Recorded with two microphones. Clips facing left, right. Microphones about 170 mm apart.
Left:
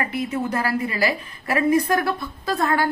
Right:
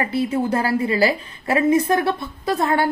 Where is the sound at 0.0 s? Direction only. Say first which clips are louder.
Right 4 dB; 30° right (ahead or behind).